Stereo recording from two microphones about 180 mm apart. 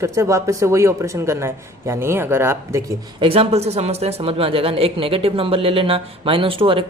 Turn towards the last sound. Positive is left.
turn(degrees=-30)  # may be behind; listen again after turning